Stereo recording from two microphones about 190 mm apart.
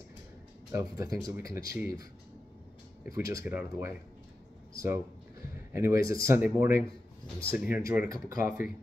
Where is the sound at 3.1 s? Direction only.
20° right (ahead or behind).